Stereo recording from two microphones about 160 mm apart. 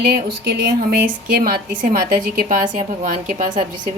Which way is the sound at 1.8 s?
60° right (ahead or behind).